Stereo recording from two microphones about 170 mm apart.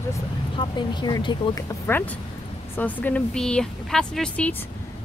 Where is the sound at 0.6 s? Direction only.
25° left (ahead or behind); by 4.6 s 5° left (ahead or behind).